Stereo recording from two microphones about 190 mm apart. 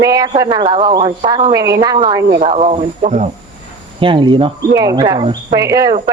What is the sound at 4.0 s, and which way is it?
A woman's voice, 25° right (ahead or behind).